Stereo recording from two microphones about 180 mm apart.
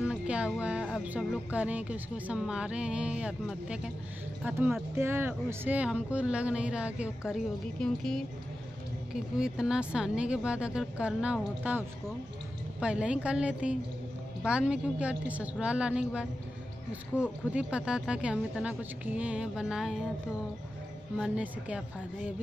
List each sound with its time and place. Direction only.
0.0 s speech: 5° right (ahead or behind)
12.8 s speech: 5° right (ahead or behind)
21.2 s speech: 5° right (ahead or behind)